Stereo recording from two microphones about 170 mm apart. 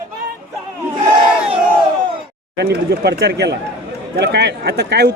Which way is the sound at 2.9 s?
70° right (ahead or behind).